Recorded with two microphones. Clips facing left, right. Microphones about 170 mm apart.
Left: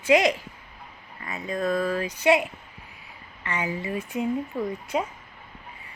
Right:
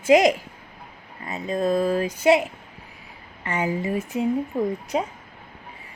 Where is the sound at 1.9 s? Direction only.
40° right (ahead or behind).